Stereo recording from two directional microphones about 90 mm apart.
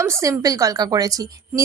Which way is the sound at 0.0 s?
35° right (ahead or behind).